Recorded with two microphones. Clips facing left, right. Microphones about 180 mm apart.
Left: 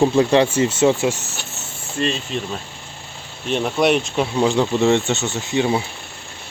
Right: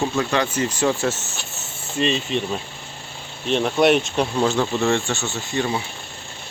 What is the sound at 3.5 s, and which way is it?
Speech, 5° left (ahead or behind).